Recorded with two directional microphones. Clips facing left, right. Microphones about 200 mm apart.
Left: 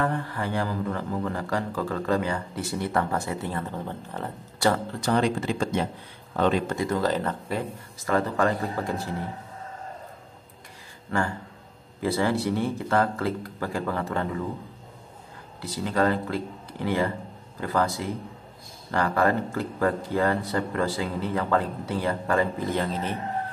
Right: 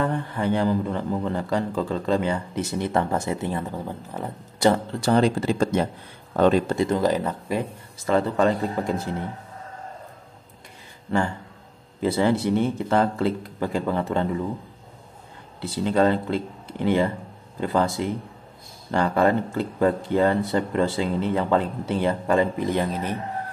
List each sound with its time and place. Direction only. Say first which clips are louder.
0.0 s speech: right 3 dB; 20° right (ahead or behind)
4.6 s speech: right 4 dB; 20° right (ahead or behind)
5.1 s speech: right 4 dB; 35° right (ahead or behind)
6.8 s speech: right 4 dB; 20° right (ahead or behind)
8.0 s speech: right 3 dB; 25° right (ahead or behind)
12.0 s speech: right 3 dB; 25° right (ahead or behind)
15.6 s speech: right 4 dB; 25° right (ahead or behind)